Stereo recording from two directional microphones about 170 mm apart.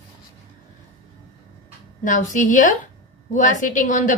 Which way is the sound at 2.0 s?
50° left (ahead or behind).